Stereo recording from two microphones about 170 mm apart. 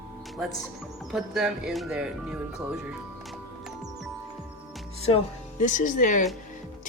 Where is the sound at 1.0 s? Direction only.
Centre (ahead or behind).